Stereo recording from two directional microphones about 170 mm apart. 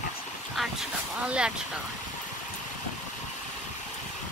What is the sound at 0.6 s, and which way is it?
Speech, 5° right (ahead or behind).